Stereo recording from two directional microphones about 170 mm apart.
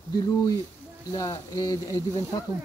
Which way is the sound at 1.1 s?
20° left (ahead or behind).